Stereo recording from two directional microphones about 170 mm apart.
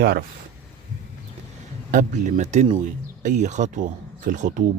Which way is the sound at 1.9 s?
45° right (ahead or behind).